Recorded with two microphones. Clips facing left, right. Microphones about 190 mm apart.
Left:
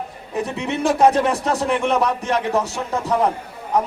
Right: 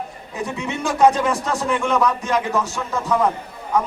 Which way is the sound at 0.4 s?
65° left (ahead or behind).